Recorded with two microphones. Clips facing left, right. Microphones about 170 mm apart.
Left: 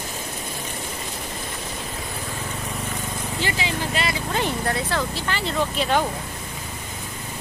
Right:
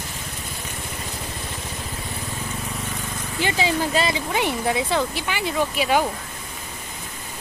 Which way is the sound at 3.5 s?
35° right (ahead or behind).